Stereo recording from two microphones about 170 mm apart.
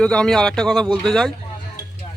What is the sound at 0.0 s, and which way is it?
Speech, 5° left (ahead or behind).